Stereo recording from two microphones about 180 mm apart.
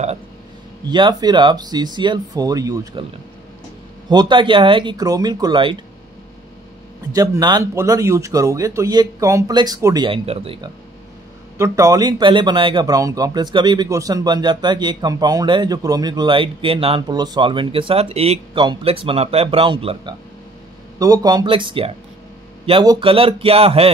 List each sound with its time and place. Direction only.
0.8 s a man's voice: 25° right (ahead or behind)
4.1 s a man's voice: 25° right (ahead or behind)
7.1 s a man's voice: 20° right (ahead or behind)
10.0 s a man's voice: 30° right (ahead or behind)
11.5 s a man's voice: 15° right (ahead or behind); by 23.9 s 30° right (ahead or behind)